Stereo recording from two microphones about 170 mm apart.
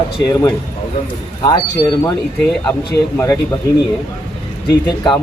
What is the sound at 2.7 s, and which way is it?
Speech, 15° left (ahead or behind).